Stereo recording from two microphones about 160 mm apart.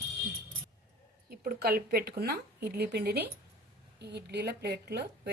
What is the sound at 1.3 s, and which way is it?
A woman's voice, 70° right (ahead or behind).